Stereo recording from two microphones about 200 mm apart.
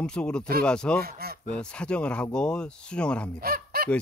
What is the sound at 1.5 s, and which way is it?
Speech, 5° left (ahead or behind).